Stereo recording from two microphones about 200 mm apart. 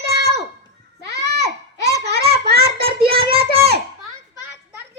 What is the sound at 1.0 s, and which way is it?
Goat, 55° right (ahead or behind).